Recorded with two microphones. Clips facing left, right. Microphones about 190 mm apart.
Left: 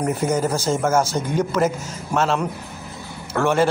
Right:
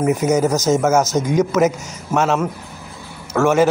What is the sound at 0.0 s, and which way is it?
A man's voice, 5° right (ahead or behind).